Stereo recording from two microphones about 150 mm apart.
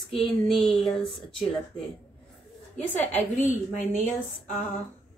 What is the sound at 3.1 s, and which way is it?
Speech, 55° left (ahead or behind).